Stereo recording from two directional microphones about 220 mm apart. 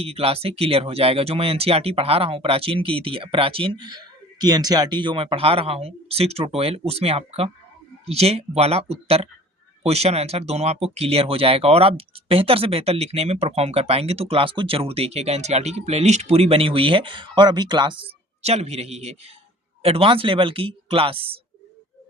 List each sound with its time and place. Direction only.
0.0 s speech: 25° right (ahead or behind)